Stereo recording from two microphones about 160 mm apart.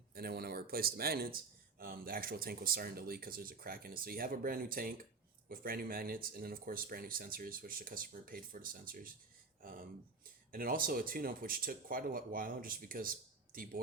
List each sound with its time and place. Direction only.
0.1 s speech: 75° right (ahead or behind)
10.5 s speech: 65° right (ahead or behind)